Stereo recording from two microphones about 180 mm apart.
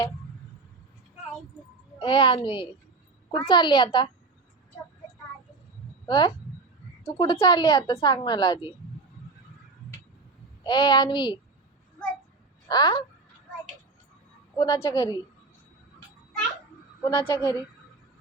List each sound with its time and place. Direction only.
2.0 s a woman's voice: 30° left (ahead or behind)
6.1 s a woman's voice: 25° left (ahead or behind)
10.6 s a woman's voice: 25° left (ahead or behind)
12.6 s speech: 25° left (ahead or behind)
14.6 s a woman's voice: 30° left (ahead or behind)
17.0 s a woman's voice: 25° left (ahead or behind)